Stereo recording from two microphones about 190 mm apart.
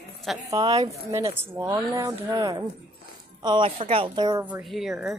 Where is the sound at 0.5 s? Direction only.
20° right (ahead or behind).